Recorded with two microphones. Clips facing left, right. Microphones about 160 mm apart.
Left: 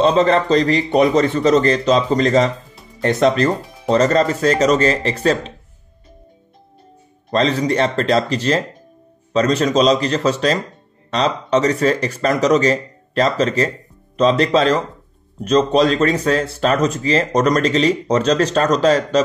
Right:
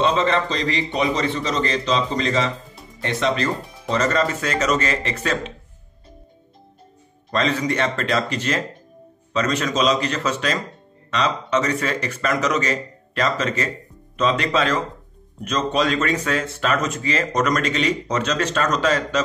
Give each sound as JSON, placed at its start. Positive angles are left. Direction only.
{"t": 0.0, "sound": "a man's voice", "side_deg": 40}
{"t": 7.2, "sound": "speech", "side_deg": 35}